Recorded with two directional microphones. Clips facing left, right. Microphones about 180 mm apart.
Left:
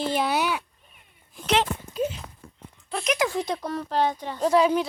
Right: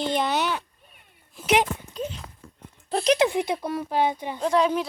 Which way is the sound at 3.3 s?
10° right (ahead or behind).